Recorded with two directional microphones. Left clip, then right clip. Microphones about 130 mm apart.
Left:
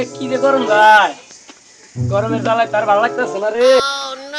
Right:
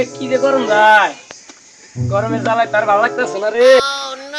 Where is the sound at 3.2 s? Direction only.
10° right (ahead or behind).